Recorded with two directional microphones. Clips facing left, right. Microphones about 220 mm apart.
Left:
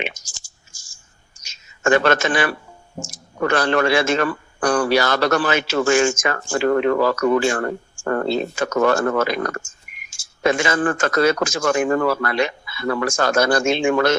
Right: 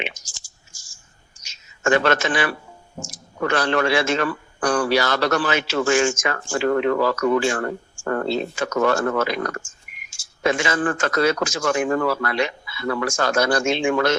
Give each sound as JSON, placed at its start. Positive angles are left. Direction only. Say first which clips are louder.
{"t": 0.0, "sound": "clicking", "louder": "left 2 dB", "side_deg": 45}
{"t": 1.4, "sound": "a sound", "louder": "left 6 dB", "side_deg": 45}
{"t": 3.1, "sound": "a man's voice", "louder": "left 3 dB", "side_deg": 45}